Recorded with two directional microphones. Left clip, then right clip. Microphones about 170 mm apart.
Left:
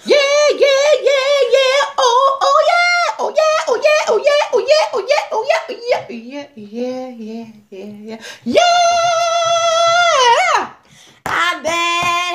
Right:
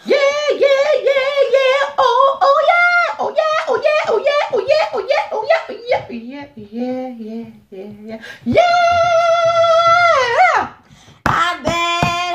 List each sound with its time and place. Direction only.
0.0 s music: 65° left (ahead or behind)
8.1 s music: 60° left (ahead or behind)
11.3 s child singing: 25° left (ahead or behind)